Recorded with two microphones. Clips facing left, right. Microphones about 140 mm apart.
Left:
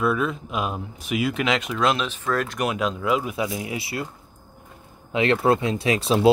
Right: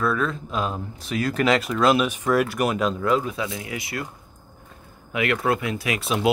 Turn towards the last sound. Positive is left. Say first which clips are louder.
# left 5 dB
turn(degrees=30)  # may be behind; listen again after turning